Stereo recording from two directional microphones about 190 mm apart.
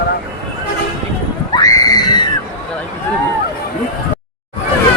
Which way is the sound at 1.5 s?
20° left (ahead or behind).